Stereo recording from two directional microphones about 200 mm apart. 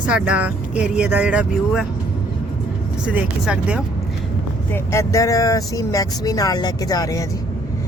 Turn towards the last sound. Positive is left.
turn(degrees=15)  # may be behind; listen again after turning